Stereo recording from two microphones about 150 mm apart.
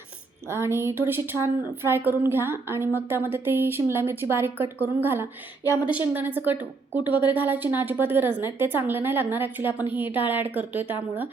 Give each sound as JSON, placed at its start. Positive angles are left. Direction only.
{"t": 0.4, "sound": "a woman's voice", "side_deg": -15}